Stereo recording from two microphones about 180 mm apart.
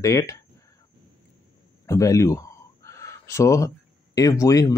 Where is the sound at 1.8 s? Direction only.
20° left (ahead or behind).